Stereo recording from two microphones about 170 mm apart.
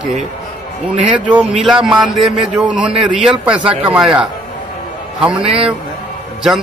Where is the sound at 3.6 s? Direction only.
30° right (ahead or behind).